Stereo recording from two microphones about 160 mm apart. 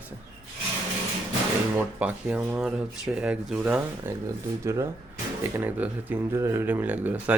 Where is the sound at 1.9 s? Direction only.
10° right (ahead or behind).